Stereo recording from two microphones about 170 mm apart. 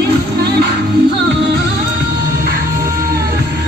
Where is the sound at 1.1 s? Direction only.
90° right.